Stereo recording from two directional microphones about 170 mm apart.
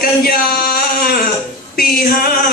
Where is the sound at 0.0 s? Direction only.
60° left (ahead or behind).